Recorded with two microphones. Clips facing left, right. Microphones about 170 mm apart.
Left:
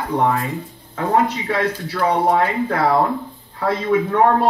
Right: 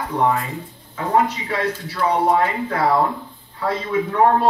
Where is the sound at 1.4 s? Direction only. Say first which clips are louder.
Left 2 dB; 50° left (ahead or behind).